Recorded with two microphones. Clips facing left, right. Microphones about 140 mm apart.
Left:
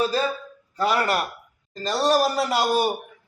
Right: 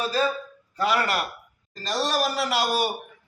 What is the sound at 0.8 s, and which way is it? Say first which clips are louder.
A man's voice: left 2 dB; 35° left (ahead or behind).